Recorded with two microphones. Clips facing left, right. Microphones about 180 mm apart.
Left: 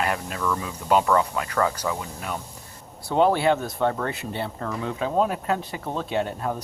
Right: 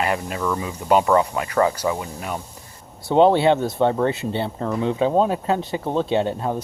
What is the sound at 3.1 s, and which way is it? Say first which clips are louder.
Speech: right 5 dB; 25° right (ahead or behind).